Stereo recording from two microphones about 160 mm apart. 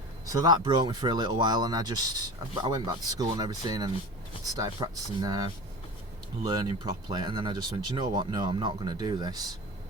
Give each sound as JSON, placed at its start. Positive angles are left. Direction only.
{"t": 0.3, "sound": "speech", "side_deg": -25}
{"t": 6.5, "sound": "speech", "side_deg": -25}